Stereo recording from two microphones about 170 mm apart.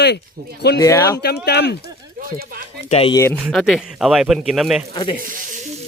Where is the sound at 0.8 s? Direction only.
20° left (ahead or behind).